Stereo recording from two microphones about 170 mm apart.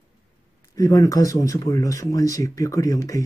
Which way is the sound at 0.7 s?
20° left (ahead or behind).